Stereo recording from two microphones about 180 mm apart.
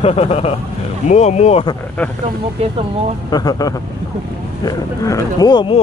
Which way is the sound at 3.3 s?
20° left (ahead or behind).